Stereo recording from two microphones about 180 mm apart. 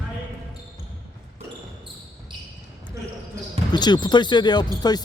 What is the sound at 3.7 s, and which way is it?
Speech, 25° left (ahead or behind).